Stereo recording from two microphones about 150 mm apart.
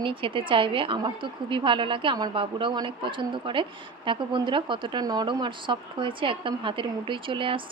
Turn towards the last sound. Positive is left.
turn(degrees=-35)  # may be behind; listen again after turning